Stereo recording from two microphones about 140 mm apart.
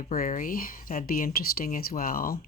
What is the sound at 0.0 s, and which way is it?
Speech, 70° left (ahead or behind).